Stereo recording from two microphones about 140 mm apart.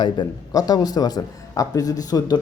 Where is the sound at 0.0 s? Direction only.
30° left (ahead or behind).